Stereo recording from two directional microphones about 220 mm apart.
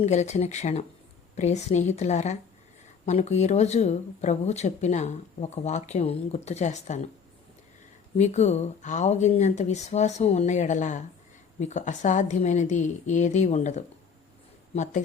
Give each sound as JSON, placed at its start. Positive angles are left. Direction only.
{"t": 0.0, "sound": "speech", "side_deg": 30}
{"t": 8.2, "sound": "speech", "side_deg": 30}